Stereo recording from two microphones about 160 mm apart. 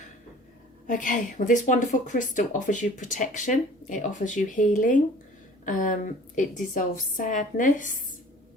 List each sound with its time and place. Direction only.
0.9 s a woman's voice: 55° left (ahead or behind)